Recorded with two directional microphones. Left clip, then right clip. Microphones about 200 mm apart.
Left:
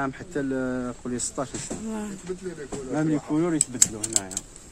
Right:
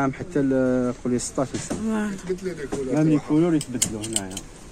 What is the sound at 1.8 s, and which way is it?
Speech, 5° left (ahead or behind).